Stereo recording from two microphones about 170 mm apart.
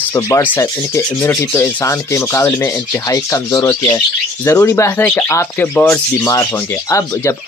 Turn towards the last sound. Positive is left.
turn(degrees=20)  # may be behind; listen again after turning